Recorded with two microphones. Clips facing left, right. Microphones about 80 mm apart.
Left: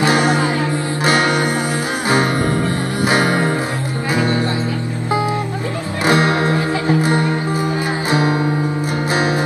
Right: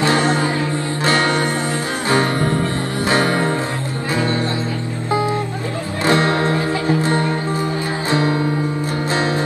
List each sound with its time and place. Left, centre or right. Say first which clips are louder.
0.0 s music: left 1 dB; centre
3.1 s music: left 1 dB; centre
6.0 s music: left 1 dB; centre